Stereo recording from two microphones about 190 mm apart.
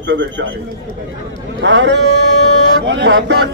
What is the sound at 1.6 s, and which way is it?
Speech, 70° right (ahead or behind).